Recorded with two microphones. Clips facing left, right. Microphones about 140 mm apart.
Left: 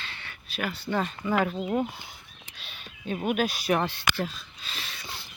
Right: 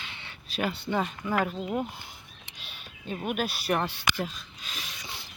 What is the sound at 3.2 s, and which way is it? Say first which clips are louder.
Speech: left 3 dB; 5° right (ahead or behind).